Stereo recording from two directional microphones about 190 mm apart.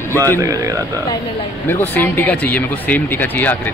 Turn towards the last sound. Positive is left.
turn(degrees=10)  # may be behind; listen again after turning